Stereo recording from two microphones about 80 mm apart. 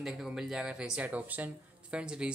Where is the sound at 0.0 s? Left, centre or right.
Centre.